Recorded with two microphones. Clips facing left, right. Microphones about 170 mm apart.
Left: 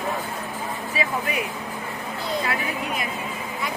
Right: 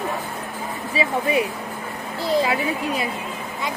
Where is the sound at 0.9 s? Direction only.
30° right (ahead or behind).